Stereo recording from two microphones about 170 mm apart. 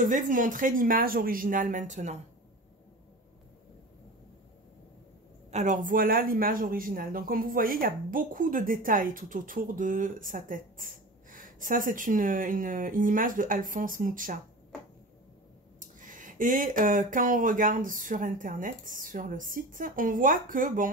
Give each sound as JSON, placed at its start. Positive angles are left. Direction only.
{"t": 0.0, "sound": "speech", "side_deg": -50}
{"t": 5.5, "sound": "speech", "side_deg": -45}
{"t": 16.0, "sound": "speech", "side_deg": -50}